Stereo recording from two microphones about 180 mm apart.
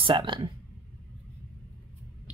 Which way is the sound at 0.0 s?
25° right (ahead or behind).